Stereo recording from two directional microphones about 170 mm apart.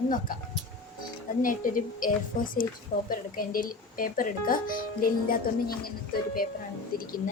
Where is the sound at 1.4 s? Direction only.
55° left (ahead or behind).